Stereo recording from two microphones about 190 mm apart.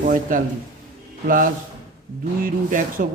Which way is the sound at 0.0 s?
45° right (ahead or behind).